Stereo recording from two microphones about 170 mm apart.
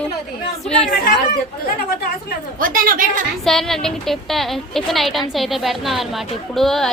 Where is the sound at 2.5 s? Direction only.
55° right (ahead or behind).